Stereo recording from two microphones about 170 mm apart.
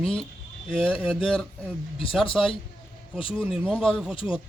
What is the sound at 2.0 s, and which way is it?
Speech, 30° left (ahead or behind).